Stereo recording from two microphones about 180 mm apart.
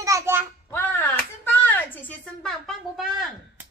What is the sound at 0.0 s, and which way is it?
Child singing, 15° right (ahead or behind).